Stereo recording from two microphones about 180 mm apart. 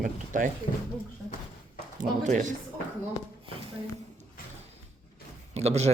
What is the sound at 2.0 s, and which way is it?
Speech, 45° right (ahead or behind).